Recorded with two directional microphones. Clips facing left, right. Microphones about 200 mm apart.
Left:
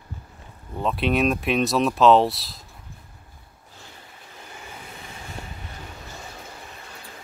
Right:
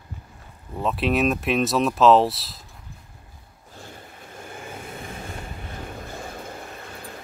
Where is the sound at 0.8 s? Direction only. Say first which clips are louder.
Even; centre (ahead or behind).